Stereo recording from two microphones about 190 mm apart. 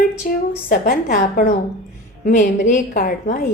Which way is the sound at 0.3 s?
45° left (ahead or behind).